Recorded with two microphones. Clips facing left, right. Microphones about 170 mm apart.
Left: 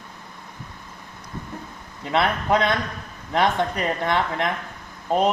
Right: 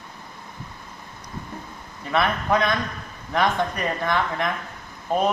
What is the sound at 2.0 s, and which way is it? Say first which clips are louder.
Speech: left 1 dB; 20° left (ahead or behind).